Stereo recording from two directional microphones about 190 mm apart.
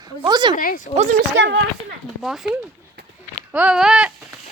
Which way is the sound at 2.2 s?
Centre (ahead or behind).